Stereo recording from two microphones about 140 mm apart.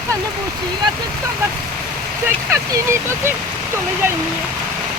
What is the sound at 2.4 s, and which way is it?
Speech, 20° right (ahead or behind).